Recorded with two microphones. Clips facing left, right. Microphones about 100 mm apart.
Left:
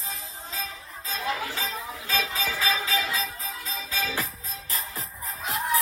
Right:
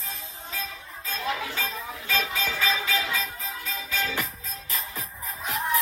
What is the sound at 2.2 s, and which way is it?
Music, centre (ahead or behind).